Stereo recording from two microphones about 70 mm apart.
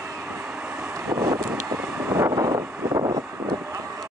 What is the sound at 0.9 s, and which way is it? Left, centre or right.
Vehicle, right.